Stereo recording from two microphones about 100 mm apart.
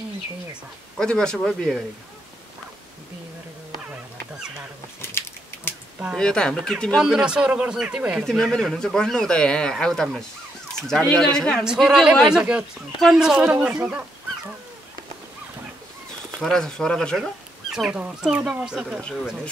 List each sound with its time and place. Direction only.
0.9 s speech: 5° left (ahead or behind)
5.2 s a sound: 25° left (ahead or behind)
6.1 s speech: 10° left (ahead or behind)
7.0 s a man's voice: 5° right (ahead or behind)
8.3 s speech: 5° left (ahead or behind)
11.6 s a man's voice: 5° right (ahead or behind)
16.3 s speech: 5° left (ahead or behind)